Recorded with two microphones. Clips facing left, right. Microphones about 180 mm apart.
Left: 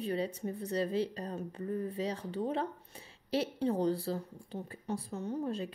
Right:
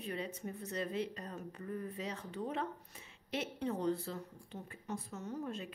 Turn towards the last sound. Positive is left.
turn(degrees=35)  # may be behind; listen again after turning